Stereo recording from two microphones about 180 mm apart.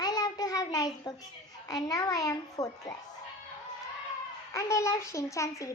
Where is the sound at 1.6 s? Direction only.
20° left (ahead or behind).